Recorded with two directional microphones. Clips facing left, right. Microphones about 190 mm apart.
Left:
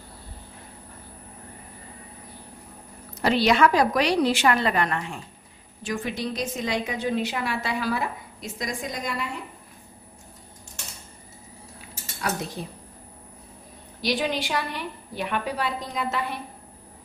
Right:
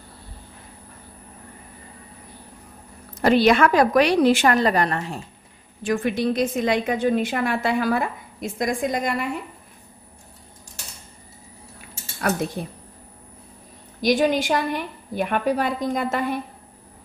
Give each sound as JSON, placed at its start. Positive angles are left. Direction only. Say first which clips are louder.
{"t": 3.2, "sound": "a woman's voice", "louder": "right 4 dB", "side_deg": -50}
{"t": 5.9, "sound": "a woman's voice", "louder": "right 7 dB", "side_deg": -55}
{"t": 12.6, "sound": "a woman's voice", "louder": "right 4 dB", "side_deg": -55}
{"t": 14.0, "sound": "a woman's voice", "louder": "right 7 dB", "side_deg": -45}